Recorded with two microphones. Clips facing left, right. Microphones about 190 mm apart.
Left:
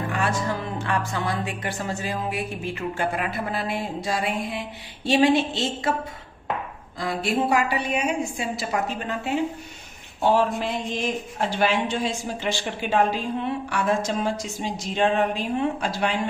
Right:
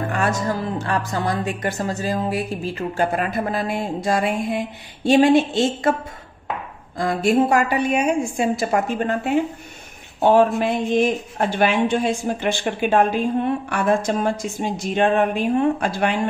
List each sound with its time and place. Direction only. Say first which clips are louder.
0.1 s a woman's voice: right 3 dB; 45° right (ahead or behind)
7.0 s a woman's voice: right 7 dB; 45° right (ahead or behind)